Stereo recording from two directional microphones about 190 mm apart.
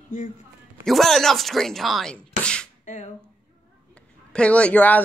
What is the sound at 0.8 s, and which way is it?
Speech, centre (ahead or behind).